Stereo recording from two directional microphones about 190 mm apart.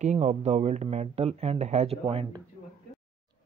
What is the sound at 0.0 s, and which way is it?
Speech, 35° right (ahead or behind).